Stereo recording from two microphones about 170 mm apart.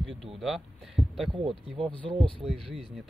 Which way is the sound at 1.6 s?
35° right (ahead or behind).